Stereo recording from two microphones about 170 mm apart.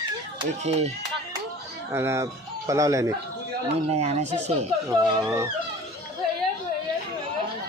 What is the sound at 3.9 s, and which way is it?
Speech, 40° right (ahead or behind).